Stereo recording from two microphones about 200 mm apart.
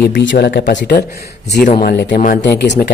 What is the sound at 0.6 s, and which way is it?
Speech, 40° left (ahead or behind).